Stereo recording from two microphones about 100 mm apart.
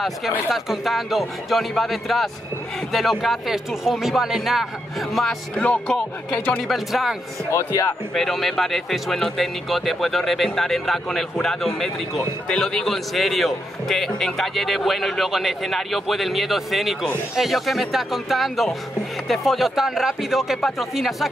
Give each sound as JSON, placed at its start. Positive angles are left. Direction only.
{"t": 0.5, "sound": "speech", "side_deg": 0}
{"t": 5.6, "sound": "speech", "side_deg": 15}
{"t": 6.7, "sound": "speech", "side_deg": 0}
{"t": 7.5, "sound": "speech", "side_deg": 30}
{"t": 8.1, "sound": "speech", "side_deg": 5}